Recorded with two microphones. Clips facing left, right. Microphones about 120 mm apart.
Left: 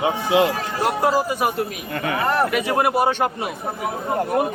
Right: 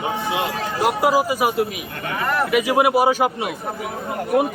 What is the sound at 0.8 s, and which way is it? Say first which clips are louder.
A man's voice: right 2 dB; 10° right (ahead or behind).